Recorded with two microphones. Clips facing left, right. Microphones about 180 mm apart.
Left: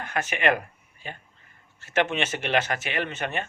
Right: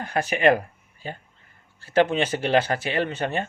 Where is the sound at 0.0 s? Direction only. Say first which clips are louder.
Right 5 dB; 35° right (ahead or behind).